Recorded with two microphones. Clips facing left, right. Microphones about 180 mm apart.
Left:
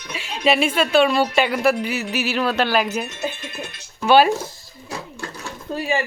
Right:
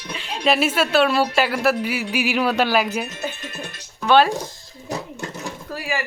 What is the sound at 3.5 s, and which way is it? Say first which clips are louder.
Music: left 1 dB; 10° left (ahead or behind).